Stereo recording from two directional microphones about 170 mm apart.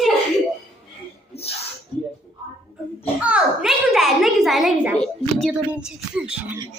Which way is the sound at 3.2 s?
5° right (ahead or behind).